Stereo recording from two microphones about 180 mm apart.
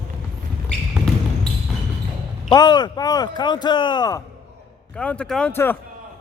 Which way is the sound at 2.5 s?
25° left (ahead or behind).